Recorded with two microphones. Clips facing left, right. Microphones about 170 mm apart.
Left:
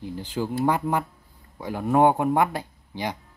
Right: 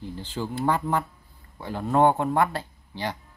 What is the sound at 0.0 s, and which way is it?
Speech, 10° left (ahead or behind).